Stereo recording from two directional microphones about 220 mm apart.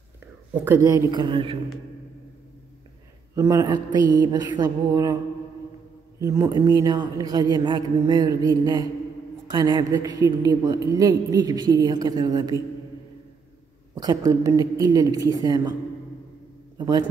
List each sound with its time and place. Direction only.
0.7 s a woman's voice: 15° right (ahead or behind)
3.3 s a woman's voice: 15° right (ahead or behind)
6.2 s a woman's voice: 15° right (ahead or behind)
13.9 s a woman's voice: 15° right (ahead or behind)
16.7 s a man's voice: 15° right (ahead or behind)